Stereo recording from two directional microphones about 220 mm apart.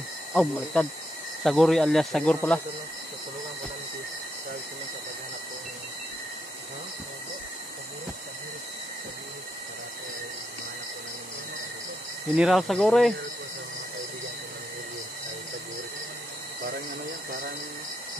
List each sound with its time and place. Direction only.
0.3 s speech: 5° left (ahead or behind)
12.4 s speech: centre (ahead or behind)